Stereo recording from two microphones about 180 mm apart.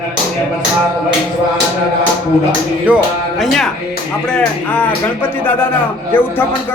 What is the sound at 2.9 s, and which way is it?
Music, 10° right (ahead or behind).